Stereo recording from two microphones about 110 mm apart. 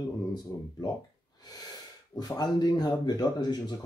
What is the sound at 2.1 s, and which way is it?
Speech, 40° left (ahead or behind).